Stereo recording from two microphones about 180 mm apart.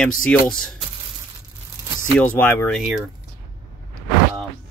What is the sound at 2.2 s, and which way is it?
Speech, 10° left (ahead or behind).